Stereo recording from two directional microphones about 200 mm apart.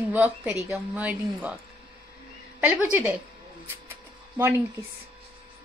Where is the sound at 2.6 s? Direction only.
10° right (ahead or behind).